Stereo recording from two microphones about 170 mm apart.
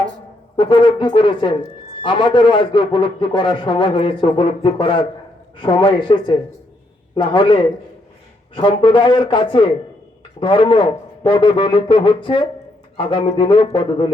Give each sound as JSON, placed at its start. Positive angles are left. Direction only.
{"t": 0.5, "sound": "a man's voice", "side_deg": 30}